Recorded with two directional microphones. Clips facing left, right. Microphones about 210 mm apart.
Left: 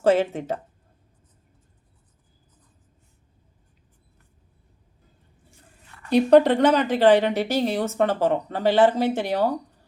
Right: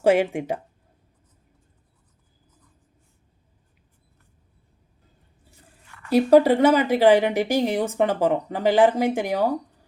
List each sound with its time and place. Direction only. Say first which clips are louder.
0.0 s a woman's voice: right 1 dB; 15° right (ahead or behind)
6.1 s a woman's voice: even; 5° right (ahead or behind)